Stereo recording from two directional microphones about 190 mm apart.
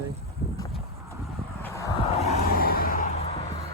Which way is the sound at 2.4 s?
50° left (ahead or behind).